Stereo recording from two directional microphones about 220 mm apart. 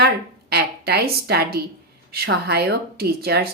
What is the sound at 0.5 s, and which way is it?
A woman's voice, 45° right (ahead or behind).